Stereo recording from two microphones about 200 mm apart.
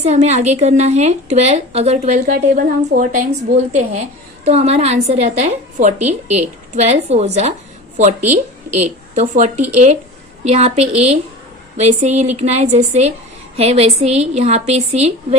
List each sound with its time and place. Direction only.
0.0 s a woman's voice: 35° right (ahead or behind)